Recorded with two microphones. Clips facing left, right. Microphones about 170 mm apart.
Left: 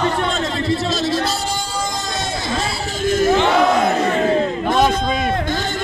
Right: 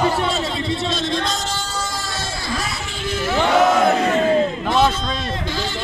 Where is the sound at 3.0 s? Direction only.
45° left (ahead or behind).